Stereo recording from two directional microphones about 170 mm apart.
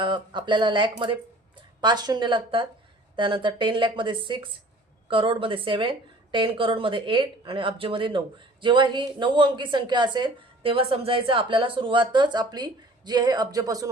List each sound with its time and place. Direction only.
0.0 s a woman's voice: 30° right (ahead or behind)